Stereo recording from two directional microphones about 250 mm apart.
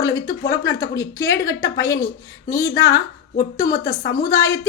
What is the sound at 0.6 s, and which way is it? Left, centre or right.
A woman's voice, centre.